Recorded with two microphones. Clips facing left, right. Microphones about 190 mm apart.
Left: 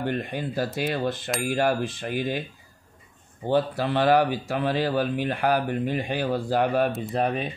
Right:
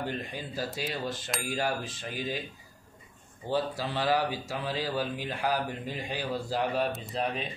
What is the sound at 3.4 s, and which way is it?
Speech, 60° left (ahead or behind).